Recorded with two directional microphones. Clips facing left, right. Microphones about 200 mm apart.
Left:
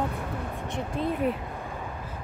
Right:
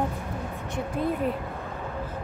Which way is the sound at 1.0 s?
50° right (ahead or behind).